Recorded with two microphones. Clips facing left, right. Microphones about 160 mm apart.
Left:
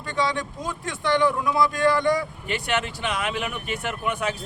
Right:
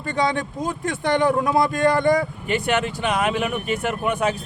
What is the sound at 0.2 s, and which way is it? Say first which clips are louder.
Speech: right 3 dB; 50° right (ahead or behind).